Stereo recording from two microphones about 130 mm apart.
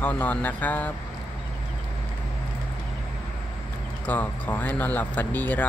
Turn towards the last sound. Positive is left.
turn(degrees=15)  # may be behind; listen again after turning